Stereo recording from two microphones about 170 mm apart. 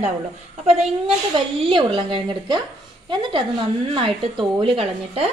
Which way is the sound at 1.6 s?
30° right (ahead or behind).